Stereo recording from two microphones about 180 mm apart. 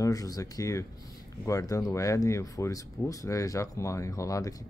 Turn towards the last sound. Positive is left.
turn(degrees=20)  # may be behind; listen again after turning